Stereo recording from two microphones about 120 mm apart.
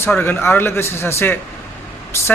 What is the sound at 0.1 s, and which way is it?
Speech, 15° left (ahead or behind).